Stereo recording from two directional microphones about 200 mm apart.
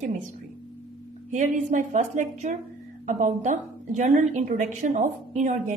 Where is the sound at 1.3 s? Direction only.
35° right (ahead or behind).